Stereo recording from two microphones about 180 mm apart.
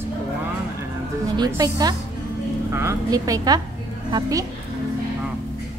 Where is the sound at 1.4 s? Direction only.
20° right (ahead or behind).